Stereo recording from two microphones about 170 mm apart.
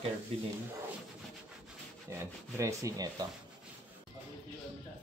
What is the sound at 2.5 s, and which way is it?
Speech, 20° right (ahead or behind).